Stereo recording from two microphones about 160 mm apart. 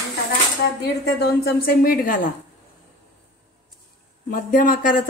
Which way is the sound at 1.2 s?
70° left (ahead or behind).